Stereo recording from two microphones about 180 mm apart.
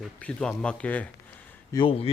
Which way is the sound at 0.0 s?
5° left (ahead or behind).